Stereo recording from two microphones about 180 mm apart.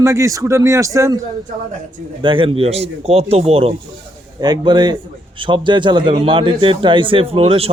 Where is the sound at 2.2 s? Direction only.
30° right (ahead or behind).